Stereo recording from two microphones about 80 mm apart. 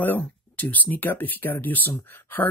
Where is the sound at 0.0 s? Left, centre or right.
Left.